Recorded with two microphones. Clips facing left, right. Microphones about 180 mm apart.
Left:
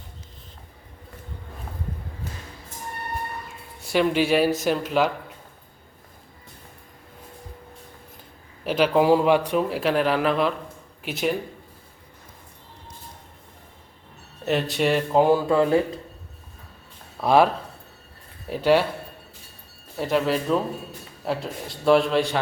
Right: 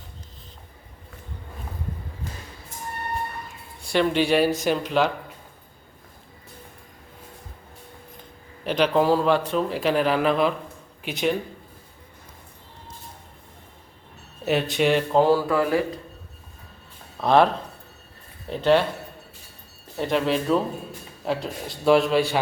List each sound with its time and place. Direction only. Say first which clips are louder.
3.9 s a man's voice: even; 5° left (ahead or behind)
8.6 s a man's voice: left 1 dB; 5° left (ahead or behind)
14.4 s a man's voice: right 1 dB; centre (ahead or behind)
15.2 s speech: left 3 dB; 20° left (ahead or behind)
17.2 s speech: even; 5° left (ahead or behind)
20.0 s a man's voice: even; 5° left (ahead or behind)